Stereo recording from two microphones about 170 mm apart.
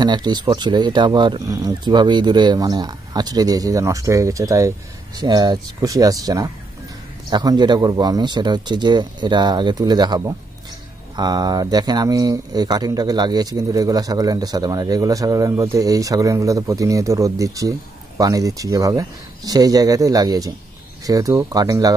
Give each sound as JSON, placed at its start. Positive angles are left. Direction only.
{"t": 0.0, "sound": "speech", "side_deg": -25}